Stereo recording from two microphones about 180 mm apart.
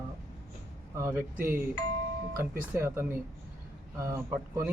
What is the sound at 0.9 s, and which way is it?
Speech, 15° right (ahead or behind).